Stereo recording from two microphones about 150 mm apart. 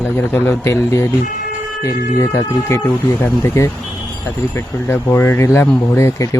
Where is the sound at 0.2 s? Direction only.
15° left (ahead or behind).